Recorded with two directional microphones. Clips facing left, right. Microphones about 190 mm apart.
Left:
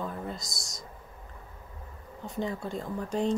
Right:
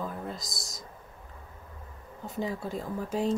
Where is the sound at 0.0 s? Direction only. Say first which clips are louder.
Even; centre (ahead or behind).